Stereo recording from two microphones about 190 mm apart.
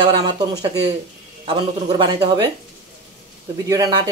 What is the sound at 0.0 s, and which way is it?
Speech, 20° right (ahead or behind).